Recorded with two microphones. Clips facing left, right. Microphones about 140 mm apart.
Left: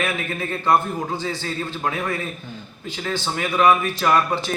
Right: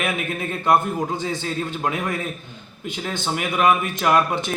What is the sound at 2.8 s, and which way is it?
A man's voice, 15° right (ahead or behind).